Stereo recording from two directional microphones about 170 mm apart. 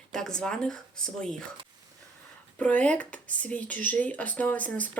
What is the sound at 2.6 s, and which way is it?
Speech, 10° left (ahead or behind).